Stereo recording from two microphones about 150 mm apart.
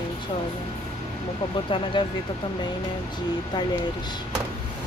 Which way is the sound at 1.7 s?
35° left (ahead or behind).